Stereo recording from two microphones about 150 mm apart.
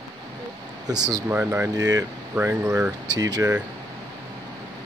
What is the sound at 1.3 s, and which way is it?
Speech, 10° right (ahead or behind).